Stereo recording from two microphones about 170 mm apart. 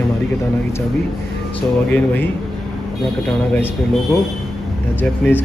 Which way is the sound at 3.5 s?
5° left (ahead or behind).